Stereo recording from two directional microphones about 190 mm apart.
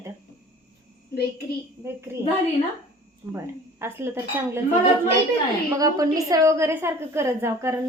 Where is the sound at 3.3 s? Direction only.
15° right (ahead or behind).